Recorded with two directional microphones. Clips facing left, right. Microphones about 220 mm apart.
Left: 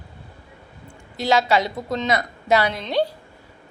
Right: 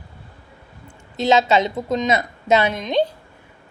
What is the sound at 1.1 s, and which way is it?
Speech, 20° right (ahead or behind).